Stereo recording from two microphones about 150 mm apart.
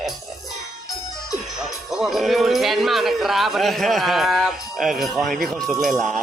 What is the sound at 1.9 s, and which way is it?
A man's voice, centre (ahead or behind).